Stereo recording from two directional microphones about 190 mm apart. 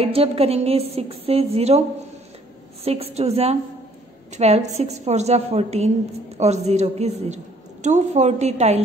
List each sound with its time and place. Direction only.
0.0 s a woman's voice: 30° right (ahead or behind)
2.8 s a woman's voice: 30° right (ahead or behind)